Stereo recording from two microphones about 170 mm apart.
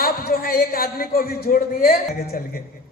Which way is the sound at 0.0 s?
60° left (ahead or behind).